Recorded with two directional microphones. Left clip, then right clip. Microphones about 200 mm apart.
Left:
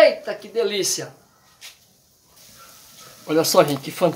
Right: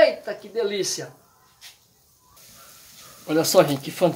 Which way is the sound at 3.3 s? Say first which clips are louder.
Left 1 dB; centre (ahead or behind).